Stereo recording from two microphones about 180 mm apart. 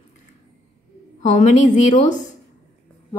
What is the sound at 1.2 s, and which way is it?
A woman's voice, 40° left (ahead or behind).